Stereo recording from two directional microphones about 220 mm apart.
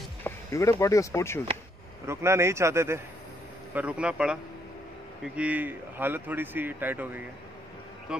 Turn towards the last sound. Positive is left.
turn(degrees=-10)  # may be behind; listen again after turning